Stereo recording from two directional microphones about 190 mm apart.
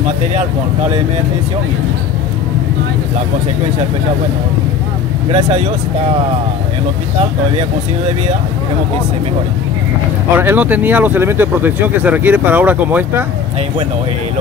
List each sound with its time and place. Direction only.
10.3 s speech: 10° right (ahead or behind)